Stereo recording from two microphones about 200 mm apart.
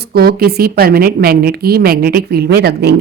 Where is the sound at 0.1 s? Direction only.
50° right (ahead or behind).